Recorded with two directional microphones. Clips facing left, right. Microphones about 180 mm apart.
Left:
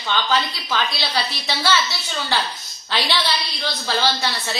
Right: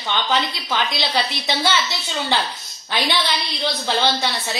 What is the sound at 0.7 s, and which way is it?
Speech, 20° right (ahead or behind).